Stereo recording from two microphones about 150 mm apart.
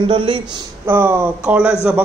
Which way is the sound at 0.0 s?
35° right (ahead or behind).